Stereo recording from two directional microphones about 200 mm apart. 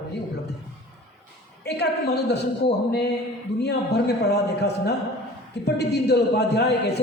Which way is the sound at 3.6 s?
55° left (ahead or behind).